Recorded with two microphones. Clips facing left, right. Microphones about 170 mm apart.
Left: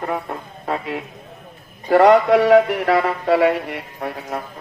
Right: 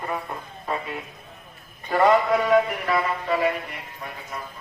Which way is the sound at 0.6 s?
75° left (ahead or behind).